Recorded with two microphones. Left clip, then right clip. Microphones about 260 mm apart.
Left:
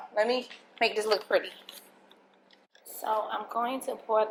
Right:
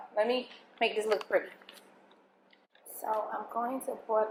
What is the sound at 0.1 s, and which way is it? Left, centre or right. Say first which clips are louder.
Speech: left 2 dB; centre.